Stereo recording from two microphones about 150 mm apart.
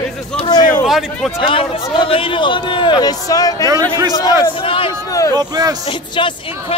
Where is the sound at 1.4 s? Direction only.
35° left (ahead or behind).